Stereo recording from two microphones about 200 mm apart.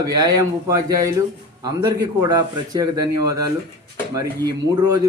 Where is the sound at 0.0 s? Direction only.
20° right (ahead or behind).